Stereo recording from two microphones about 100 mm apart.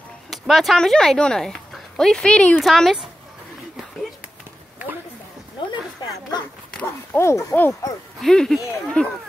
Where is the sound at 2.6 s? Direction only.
Centre (ahead or behind).